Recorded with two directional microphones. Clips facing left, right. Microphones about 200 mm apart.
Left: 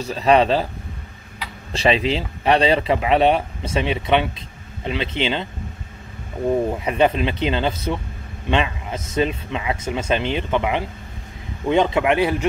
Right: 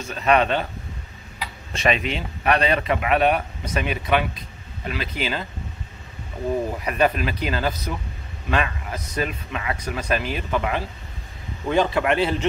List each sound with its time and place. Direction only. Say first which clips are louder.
0.0 s speech: left 4 dB; 30° left (ahead or behind)
1.7 s speech: left 4 dB; 30° left (ahead or behind)
6.8 s a man's voice: left 3 dB; 25° left (ahead or behind)